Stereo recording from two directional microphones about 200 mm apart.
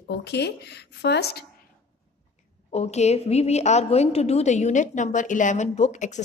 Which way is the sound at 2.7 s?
35° left (ahead or behind).